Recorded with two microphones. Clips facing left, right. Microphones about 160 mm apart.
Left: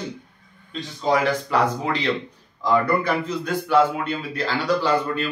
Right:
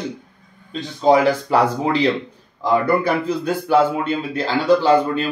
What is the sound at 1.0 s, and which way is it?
Speech, 30° right (ahead or behind).